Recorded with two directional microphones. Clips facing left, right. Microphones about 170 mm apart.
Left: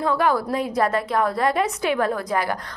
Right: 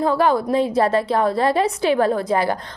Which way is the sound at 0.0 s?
30° right (ahead or behind).